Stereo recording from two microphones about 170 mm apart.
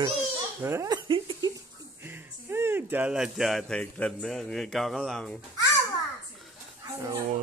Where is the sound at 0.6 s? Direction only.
15° right (ahead or behind).